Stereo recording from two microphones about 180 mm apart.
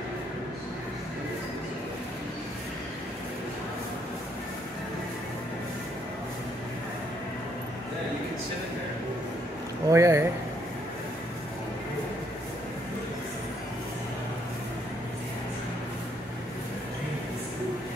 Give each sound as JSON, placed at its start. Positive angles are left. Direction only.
{"t": 9.8, "sound": "speech", "side_deg": -15}